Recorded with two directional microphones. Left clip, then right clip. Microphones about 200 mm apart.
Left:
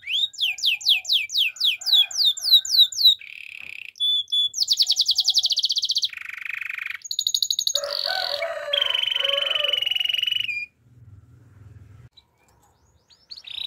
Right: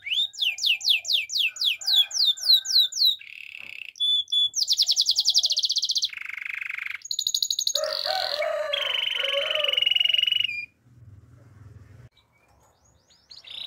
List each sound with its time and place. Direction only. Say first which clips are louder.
0.0 s music: left 1 dB; 10° left (ahead or behind)
2.9 s a sound: left 5 dB; 15° left (ahead or behind)
4.6 s chirp: left 2 dB; 10° left (ahead or behind)
13.3 s chirp: left 5 dB; 15° left (ahead or behind)